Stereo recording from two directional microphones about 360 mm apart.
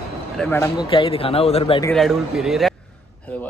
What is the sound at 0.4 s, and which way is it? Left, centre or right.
Speech, centre.